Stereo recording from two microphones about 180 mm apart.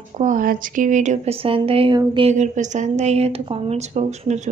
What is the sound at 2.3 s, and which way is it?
A woman's voice, 40° right (ahead or behind).